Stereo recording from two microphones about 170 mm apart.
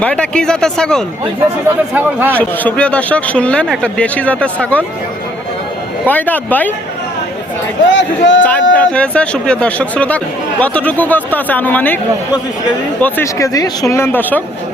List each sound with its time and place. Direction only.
0.0 s speech: 5° left (ahead or behind)
1.9 s speech: 10° right (ahead or behind)
2.3 s speech: 10° left (ahead or behind)
6.1 s speech: 10° left (ahead or behind)
7.9 s speech: 90° left
8.7 s speech: 5° left (ahead or behind)
13.0 s speech: 10° left (ahead or behind)